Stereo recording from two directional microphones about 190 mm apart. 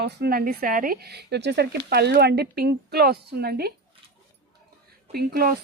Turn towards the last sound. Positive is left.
turn(degrees=-50)  # may be behind; listen again after turning